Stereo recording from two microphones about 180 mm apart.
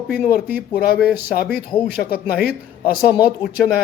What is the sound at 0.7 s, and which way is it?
A man's voice, 55° left (ahead or behind).